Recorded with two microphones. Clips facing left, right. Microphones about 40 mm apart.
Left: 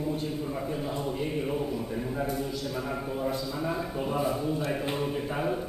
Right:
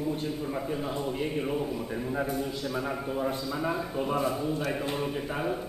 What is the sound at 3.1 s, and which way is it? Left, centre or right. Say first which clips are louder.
Speech: even; centre.